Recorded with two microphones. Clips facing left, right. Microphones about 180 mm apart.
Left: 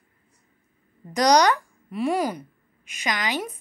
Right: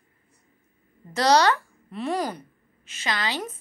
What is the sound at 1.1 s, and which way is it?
A child's voice, 15° left (ahead or behind).